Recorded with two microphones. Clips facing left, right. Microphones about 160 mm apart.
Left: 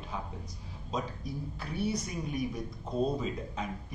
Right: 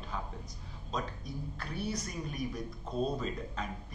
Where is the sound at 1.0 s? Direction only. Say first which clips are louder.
Left 2 dB; 5° left (ahead or behind).